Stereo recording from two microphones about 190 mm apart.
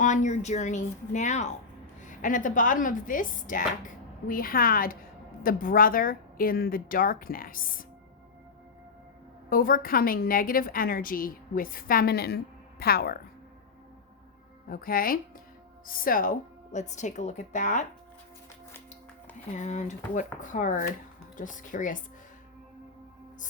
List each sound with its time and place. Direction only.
0.0 s speech: 40° left (ahead or behind)
9.5 s speech: 50° left (ahead or behind)
14.7 s speech: 50° left (ahead or behind)
19.5 s speech: 40° left (ahead or behind)